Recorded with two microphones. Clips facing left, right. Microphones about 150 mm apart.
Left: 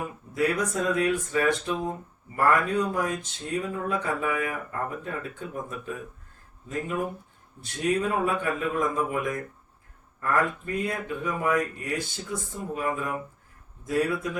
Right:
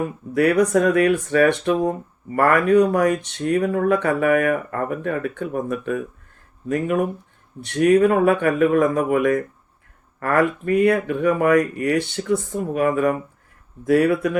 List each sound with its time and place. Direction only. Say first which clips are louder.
0.3 s speech: right 10 dB; 65° right (ahead or behind)